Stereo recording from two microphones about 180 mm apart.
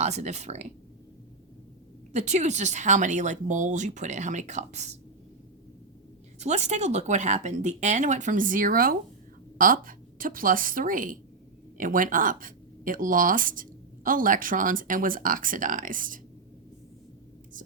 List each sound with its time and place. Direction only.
0.0 s speech: 40° right (ahead or behind)
2.1 s speech: 40° right (ahead or behind)
6.4 s speech: 40° right (ahead or behind)